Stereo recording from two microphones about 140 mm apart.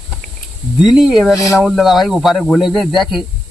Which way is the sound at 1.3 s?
25° left (ahead or behind).